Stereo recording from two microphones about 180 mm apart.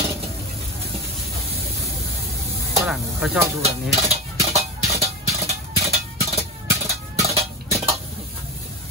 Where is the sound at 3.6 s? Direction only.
35° right (ahead or behind).